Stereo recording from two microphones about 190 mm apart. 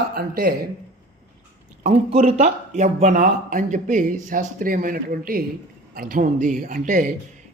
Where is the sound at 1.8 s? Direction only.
30° right (ahead or behind).